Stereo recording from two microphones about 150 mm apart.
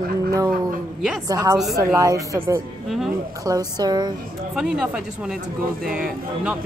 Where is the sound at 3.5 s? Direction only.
25° right (ahead or behind).